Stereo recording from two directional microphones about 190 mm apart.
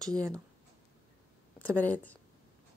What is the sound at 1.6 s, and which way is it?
Speech, 10° left (ahead or behind).